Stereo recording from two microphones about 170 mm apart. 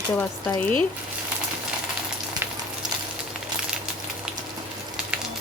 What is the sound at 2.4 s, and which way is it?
Frying, 15° right (ahead or behind).